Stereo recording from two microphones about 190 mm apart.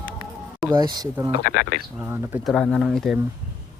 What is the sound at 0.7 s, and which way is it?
Speech, 20° right (ahead or behind).